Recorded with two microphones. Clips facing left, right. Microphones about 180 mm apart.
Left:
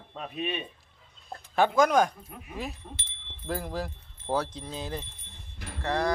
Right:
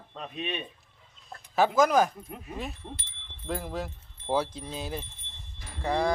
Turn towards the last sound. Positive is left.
turn(degrees=-10)  # may be behind; listen again after turning